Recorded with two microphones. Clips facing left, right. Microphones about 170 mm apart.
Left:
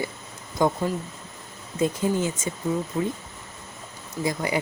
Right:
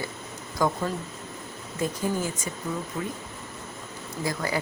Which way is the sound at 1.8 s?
20° left (ahead or behind).